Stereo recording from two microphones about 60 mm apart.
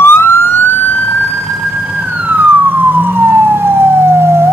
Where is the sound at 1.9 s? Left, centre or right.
Right.